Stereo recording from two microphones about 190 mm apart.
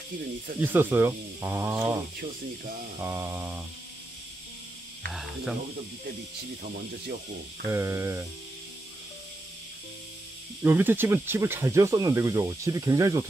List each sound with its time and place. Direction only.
0.6 s speech: 10° right (ahead or behind)
5.1 s speech: centre (ahead or behind)
7.7 s speech: 15° right (ahead or behind)
10.6 s speech: 10° right (ahead or behind)